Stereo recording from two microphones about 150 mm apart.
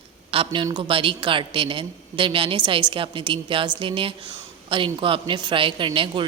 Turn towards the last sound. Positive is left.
turn(degrees=-35)  # may be behind; listen again after turning